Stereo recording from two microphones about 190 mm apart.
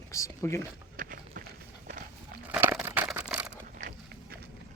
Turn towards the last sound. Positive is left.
turn(degrees=-55)  # may be behind; listen again after turning